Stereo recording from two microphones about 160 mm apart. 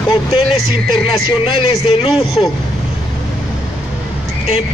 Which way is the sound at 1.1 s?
35° left (ahead or behind).